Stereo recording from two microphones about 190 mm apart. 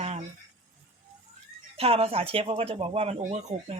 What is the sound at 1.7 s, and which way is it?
Speech, 30° right (ahead or behind).